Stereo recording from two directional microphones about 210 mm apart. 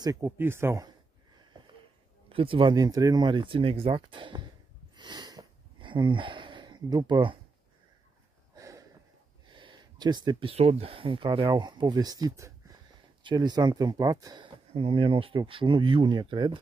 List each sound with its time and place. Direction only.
0.0 s speech: 15° right (ahead or behind)
1.5 s a sound: 20° right (ahead or behind)
2.2 s speech: 25° right (ahead or behind)
4.9 s wheeze: 20° right (ahead or behind)
8.5 s a sound: 15° right (ahead or behind)
9.5 s speech: 25° right (ahead or behind)